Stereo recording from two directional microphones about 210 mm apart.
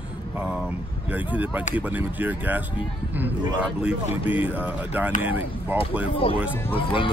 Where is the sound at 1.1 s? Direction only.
5° right (ahead or behind).